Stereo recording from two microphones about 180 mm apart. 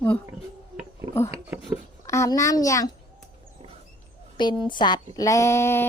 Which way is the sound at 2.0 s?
15° left (ahead or behind).